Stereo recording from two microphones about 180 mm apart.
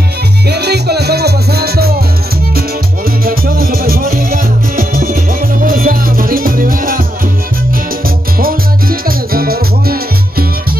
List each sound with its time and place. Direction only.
0.5 s music: 65° right (ahead or behind)
3.3 s music: 55° right (ahead or behind)
8.4 s music: 55° right (ahead or behind)